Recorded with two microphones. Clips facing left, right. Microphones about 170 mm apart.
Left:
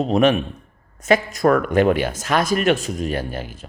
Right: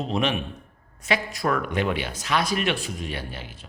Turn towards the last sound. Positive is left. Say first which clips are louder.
# left 9 dB
turn(degrees=45)  # may be behind; listen again after turning